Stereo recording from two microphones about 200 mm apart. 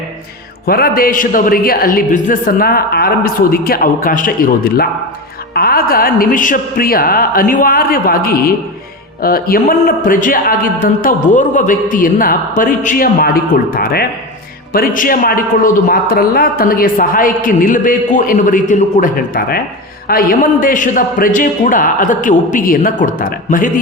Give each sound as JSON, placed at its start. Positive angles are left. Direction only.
{"t": 0.6, "sound": "a man's voice", "side_deg": 50}